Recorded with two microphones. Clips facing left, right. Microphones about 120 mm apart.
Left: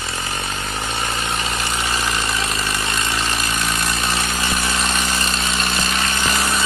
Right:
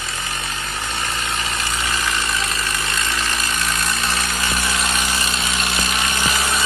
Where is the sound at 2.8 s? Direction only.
30° left (ahead or behind).